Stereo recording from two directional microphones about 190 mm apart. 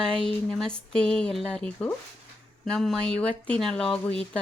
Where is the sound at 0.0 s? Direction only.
5° left (ahead or behind).